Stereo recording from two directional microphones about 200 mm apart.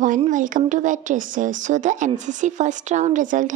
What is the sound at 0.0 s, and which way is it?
A woman's voice, 40° right (ahead or behind).